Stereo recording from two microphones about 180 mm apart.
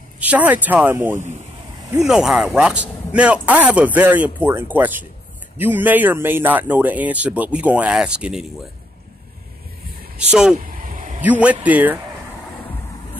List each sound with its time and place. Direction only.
0.2 s a man's voice: 10° right (ahead or behind)
2.0 s a man's voice: 5° right (ahead or behind)
10.5 s vehicle: 50° right (ahead or behind)
11.2 s a man's voice: 10° right (ahead or behind)